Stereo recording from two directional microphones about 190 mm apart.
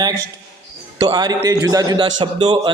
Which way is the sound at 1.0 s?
20° right (ahead or behind).